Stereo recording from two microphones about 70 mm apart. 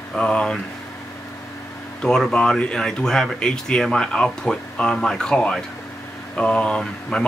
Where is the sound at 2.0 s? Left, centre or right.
Centre.